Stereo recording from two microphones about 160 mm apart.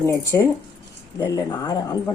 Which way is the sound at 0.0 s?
15° left (ahead or behind).